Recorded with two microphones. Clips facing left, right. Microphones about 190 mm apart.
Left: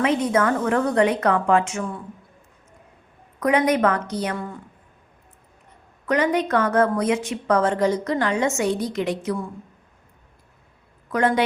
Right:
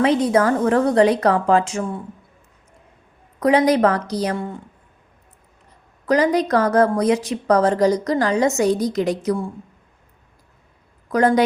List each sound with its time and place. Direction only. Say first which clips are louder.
0.0 s a woman's voice: right 4 dB; 35° right (ahead or behind)
3.4 s a woman's voice: right 4 dB; 35° right (ahead or behind)
6.1 s a woman's voice: right 3 dB; 35° right (ahead or behind)
11.1 s a woman's voice: right 4 dB; 40° right (ahead or behind)